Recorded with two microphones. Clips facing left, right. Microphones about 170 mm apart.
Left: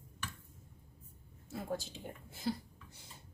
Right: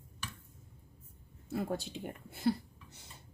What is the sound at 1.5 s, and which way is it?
A woman's voice, 65° right (ahead or behind).